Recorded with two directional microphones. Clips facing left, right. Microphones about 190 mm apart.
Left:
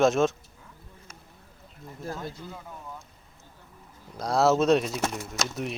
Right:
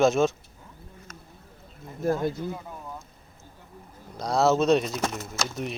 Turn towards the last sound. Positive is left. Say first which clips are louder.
# even
turn(degrees=0)  # may be behind; listen again after turning